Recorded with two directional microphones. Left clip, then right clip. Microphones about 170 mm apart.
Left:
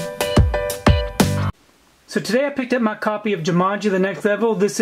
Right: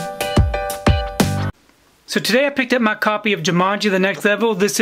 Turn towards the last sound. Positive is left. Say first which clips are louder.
# right 2 dB
turn(degrees=-25)  # may be behind; listen again after turning